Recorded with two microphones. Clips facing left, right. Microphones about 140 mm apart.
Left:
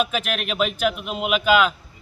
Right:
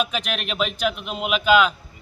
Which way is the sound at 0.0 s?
5° left (ahead or behind).